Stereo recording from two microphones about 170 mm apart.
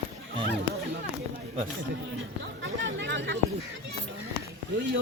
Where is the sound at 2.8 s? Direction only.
90° right.